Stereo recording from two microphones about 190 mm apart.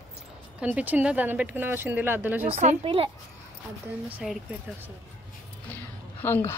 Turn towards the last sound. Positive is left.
turn(degrees=10)  # may be behind; listen again after turning